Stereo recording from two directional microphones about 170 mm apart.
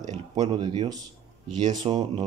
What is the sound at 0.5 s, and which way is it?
Speech, 30° right (ahead or behind).